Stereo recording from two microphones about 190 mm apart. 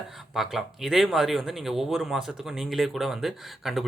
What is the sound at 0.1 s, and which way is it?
Speech, centre (ahead or behind).